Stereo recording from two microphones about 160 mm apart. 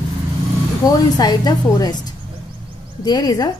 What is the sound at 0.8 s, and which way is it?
A woman's voice, 25° left (ahead or behind).